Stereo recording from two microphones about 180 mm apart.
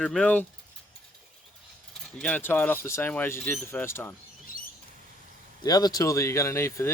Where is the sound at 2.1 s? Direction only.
5° left (ahead or behind).